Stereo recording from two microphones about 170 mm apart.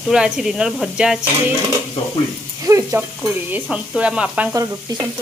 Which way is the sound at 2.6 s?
20° right (ahead or behind).